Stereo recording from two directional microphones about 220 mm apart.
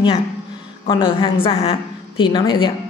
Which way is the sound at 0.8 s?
20° left (ahead or behind).